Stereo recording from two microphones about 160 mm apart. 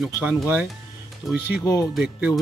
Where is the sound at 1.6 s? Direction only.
20° left (ahead or behind).